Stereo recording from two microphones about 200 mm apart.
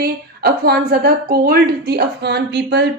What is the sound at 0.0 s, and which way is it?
A woman's voice, 50° right (ahead or behind).